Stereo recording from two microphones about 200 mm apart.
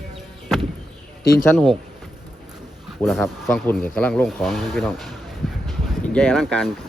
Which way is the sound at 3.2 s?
5° left (ahead or behind).